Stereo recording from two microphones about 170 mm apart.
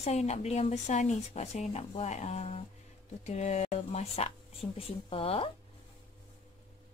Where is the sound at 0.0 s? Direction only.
40° left (ahead or behind).